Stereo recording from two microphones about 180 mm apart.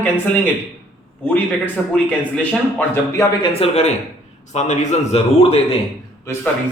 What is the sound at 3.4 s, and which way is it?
A man's voice, 30° left (ahead or behind).